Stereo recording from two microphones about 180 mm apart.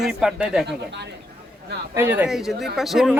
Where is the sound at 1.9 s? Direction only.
10° right (ahead or behind).